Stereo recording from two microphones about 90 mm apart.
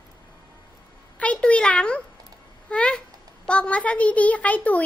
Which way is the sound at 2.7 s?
10° left (ahead or behind).